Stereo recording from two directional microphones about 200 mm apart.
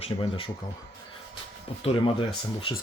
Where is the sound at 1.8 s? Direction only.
30° left (ahead or behind).